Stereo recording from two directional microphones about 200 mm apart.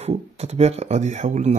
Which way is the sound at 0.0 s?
30° right (ahead or behind).